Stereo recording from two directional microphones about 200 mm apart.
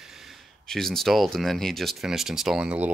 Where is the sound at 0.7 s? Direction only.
Centre (ahead or behind).